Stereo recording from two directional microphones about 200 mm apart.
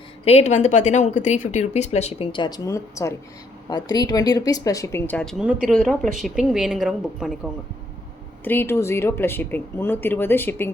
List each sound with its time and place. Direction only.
0.3 s a woman's voice: 35° left (ahead or behind); by 7.3 s centre (ahead or behind)
8.4 s speech: 10° left (ahead or behind)